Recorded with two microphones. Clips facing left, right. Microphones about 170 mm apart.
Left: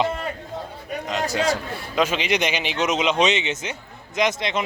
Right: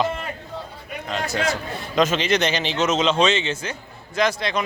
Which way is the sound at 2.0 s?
10° left (ahead or behind).